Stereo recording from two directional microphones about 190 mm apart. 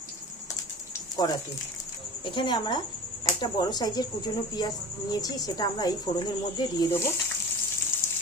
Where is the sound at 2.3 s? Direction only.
25° left (ahead or behind).